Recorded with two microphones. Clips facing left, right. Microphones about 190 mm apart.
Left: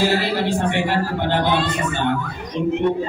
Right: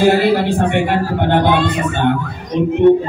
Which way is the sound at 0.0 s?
55° right (ahead or behind).